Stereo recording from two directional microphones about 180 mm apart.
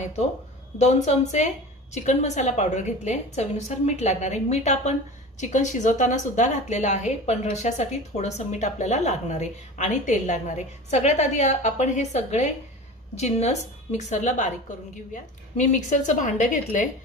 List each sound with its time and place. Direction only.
0.0 s a woman's voice: 40° left (ahead or behind)